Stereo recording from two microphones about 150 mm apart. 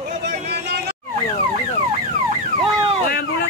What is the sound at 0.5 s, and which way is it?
Vehicle, 90° right.